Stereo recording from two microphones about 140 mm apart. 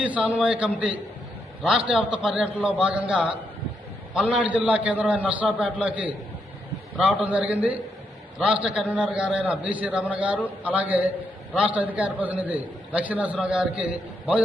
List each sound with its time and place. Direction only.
0.0 s a man's voice: 10° right (ahead or behind)
7.2 s a man's voice: 10° right (ahead or behind)